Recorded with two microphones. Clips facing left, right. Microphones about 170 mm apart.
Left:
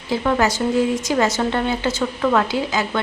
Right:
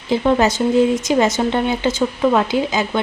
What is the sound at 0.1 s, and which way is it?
A woman's voice, 20° right (ahead or behind).